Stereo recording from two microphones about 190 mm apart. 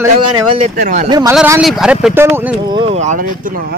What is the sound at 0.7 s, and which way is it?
Speech, 45° right (ahead or behind).